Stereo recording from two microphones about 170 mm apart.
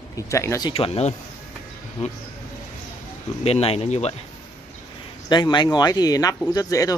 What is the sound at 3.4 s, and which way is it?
Speech, 35° left (ahead or behind).